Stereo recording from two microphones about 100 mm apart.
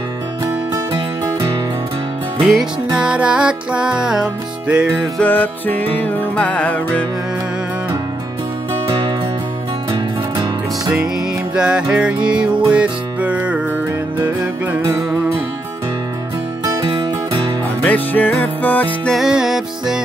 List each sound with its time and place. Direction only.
2.4 s music: 5° right (ahead or behind)
5.2 s music: 15° left (ahead or behind)
9.8 s music: 55° right (ahead or behind)
11.5 s music: 10° right (ahead or behind)
17.8 s music: 15° left (ahead or behind)
19.0 s music: 5° right (ahead or behind)